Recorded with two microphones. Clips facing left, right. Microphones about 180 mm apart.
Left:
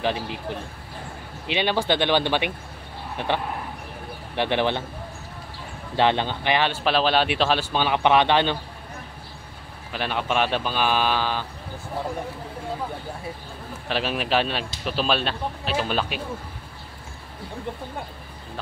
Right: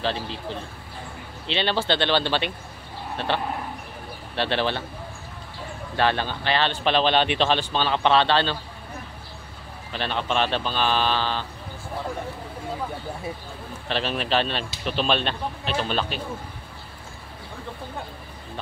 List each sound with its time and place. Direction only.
0.0 s speech: 15° left (ahead or behind)
4.4 s speech: 15° left (ahead or behind)
5.9 s speech: 20° left (ahead or behind)
9.9 s speech: 10° left (ahead or behind)
13.8 s speech: 10° left (ahead or behind)